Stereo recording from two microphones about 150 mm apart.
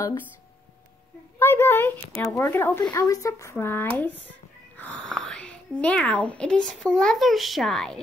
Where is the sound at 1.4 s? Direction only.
15° left (ahead or behind).